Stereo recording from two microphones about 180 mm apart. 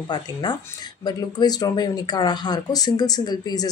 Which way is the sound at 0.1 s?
25° left (ahead or behind).